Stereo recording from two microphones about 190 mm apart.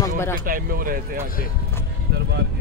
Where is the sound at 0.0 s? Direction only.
15° left (ahead or behind).